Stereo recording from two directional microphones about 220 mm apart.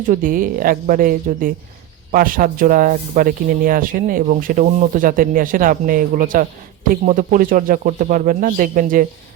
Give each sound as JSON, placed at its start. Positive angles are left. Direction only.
{"t": 0.1, "sound": "speech", "side_deg": -40}